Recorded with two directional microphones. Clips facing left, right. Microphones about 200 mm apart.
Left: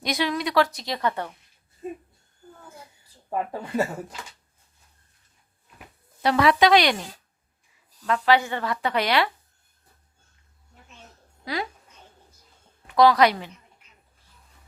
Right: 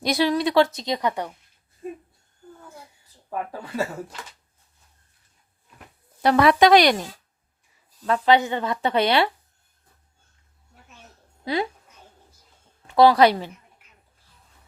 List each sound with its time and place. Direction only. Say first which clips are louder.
0.0 s speech: right 5 dB; 35° right (ahead or behind); by 1.3 s 15° right (ahead or behind)
6.2 s speech: right 3 dB; 50° right (ahead or behind)
8.0 s speech: right 2 dB; 30° right (ahead or behind)
11.4 s speech: right 5 dB; 25° right (ahead or behind)
12.9 s a woman's voice: right 2 dB; 30° right (ahead or behind)